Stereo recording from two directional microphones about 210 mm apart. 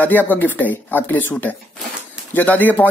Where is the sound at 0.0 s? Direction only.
10° left (ahead or behind).